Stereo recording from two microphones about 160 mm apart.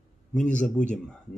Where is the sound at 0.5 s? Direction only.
5° left (ahead or behind).